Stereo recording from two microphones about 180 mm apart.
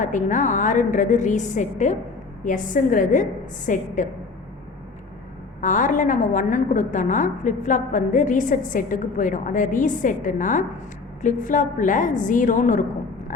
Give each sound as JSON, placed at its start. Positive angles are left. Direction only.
{"t": 0.0, "sound": "a woman's voice", "side_deg": 45}
{"t": 5.5, "sound": "a woman's voice", "side_deg": 45}